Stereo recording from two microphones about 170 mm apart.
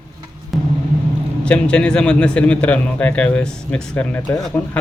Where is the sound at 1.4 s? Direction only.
5° left (ahead or behind).